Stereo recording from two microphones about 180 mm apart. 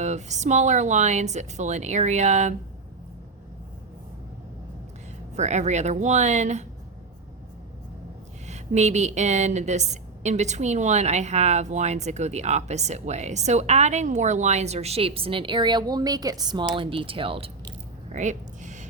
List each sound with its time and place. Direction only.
0.0 s a woman's voice: 40° right (ahead or behind)
5.4 s a woman's voice: 40° right (ahead or behind)
8.4 s a woman's voice: 40° right (ahead or behind)
18.1 s a sound: 40° right (ahead or behind)